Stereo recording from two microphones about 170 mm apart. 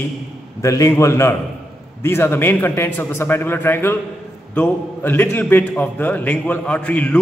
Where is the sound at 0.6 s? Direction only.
20° left (ahead or behind).